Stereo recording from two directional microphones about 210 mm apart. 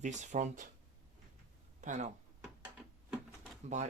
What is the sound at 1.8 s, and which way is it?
Speech, 35° right (ahead or behind).